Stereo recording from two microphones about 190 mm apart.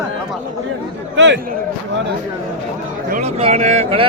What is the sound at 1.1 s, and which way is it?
Speech, 70° right (ahead or behind).